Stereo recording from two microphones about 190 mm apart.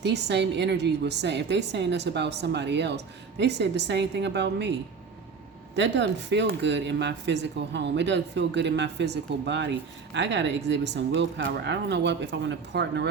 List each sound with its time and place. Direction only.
0.0 s a woman's voice: 65° right (ahead or behind)
5.7 s speech: 70° right (ahead or behind)